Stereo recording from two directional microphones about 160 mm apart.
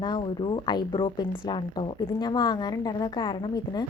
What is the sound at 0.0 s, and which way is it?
A woman's voice, 25° left (ahead or behind).